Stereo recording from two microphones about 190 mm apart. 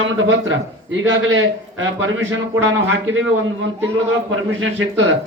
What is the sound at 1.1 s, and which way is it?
Speech, 80° right.